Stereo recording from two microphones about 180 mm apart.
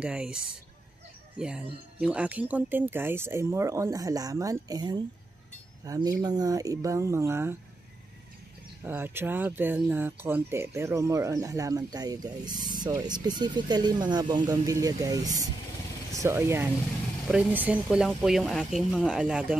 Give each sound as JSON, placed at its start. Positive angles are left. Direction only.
{"t": 0.0, "sound": "speech", "side_deg": -5}
{"t": 1.4, "sound": "speech", "side_deg": -5}
{"t": 8.8, "sound": "speech", "side_deg": -10}